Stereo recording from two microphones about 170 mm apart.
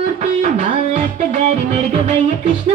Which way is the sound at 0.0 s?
40° right (ahead or behind).